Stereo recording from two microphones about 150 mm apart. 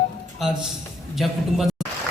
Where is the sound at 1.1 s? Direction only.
Centre (ahead or behind).